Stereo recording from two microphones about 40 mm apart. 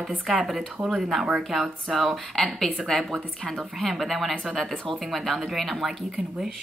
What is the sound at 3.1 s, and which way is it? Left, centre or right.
Speech, left.